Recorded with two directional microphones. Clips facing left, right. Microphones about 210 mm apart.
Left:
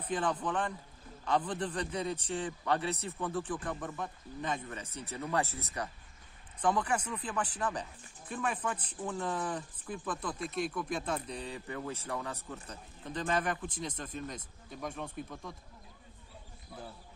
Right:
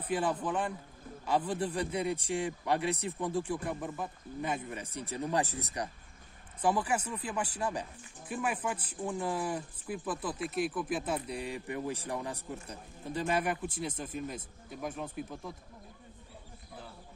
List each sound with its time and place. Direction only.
0.0 s speech: 10° right (ahead or behind)